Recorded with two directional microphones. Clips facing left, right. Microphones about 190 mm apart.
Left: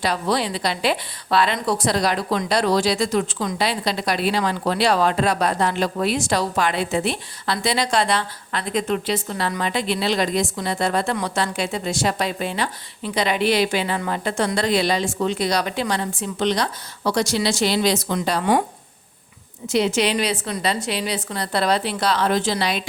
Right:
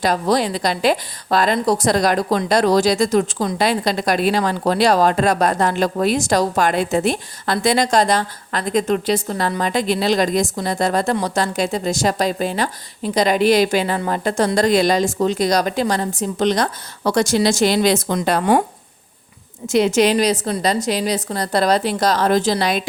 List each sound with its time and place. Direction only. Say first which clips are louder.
0.0 s speech: right 4 dB; 45° right (ahead or behind)
19.6 s a woman's voice: right 5 dB; 50° right (ahead or behind)